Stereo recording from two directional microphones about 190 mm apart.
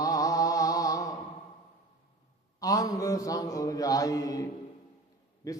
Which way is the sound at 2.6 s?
20° left (ahead or behind).